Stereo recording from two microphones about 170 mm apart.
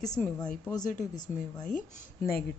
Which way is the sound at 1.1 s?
25° left (ahead or behind).